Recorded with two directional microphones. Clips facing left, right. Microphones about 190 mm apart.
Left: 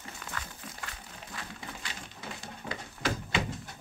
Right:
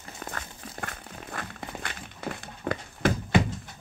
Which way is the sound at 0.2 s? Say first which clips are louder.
Right 5 dB; 50° right (ahead or behind).